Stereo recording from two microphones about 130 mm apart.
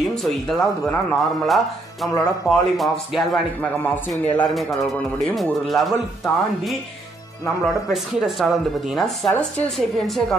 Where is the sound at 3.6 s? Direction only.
10° left (ahead or behind).